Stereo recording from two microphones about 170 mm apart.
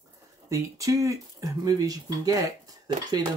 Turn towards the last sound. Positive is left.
turn(degrees=-20)  # may be behind; listen again after turning